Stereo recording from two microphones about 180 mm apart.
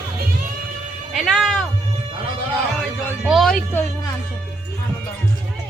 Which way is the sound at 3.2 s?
Centre (ahead or behind).